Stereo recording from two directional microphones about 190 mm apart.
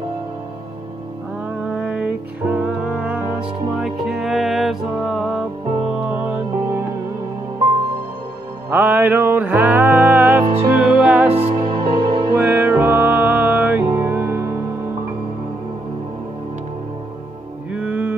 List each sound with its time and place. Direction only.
1.6 s music: 5° right (ahead or behind)
8.6 s music: 10° right (ahead or behind)
11.3 s music: 30° right (ahead or behind)
12.4 s music: 10° right (ahead or behind)
17.7 s music: 10° right (ahead or behind)